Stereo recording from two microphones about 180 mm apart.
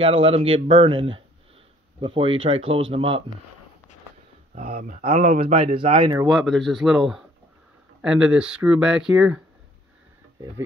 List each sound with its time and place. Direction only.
0.0 s speech: 30° right (ahead or behind)
5.0 s speech: 30° right (ahead or behind)
6.2 s speech: centre (ahead or behind)